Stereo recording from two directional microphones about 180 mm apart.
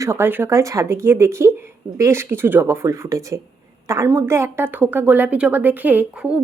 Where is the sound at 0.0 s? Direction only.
15° right (ahead or behind).